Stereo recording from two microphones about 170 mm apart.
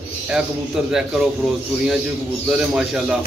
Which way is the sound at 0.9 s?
5° right (ahead or behind).